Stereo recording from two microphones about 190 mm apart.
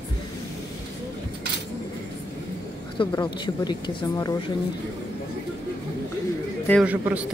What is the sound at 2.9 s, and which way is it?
Speech, 25° left (ahead or behind).